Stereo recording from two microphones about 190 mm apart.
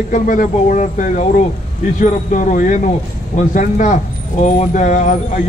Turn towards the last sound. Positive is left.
turn(degrees=40)  # may be behind; listen again after turning